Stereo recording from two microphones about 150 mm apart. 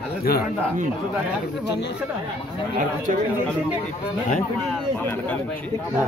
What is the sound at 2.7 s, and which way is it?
Speech, 65° right (ahead or behind).